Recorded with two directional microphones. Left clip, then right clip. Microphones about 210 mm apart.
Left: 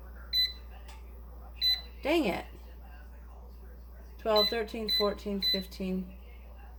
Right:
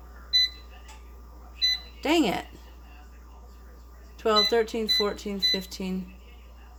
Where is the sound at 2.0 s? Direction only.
50° right (ahead or behind).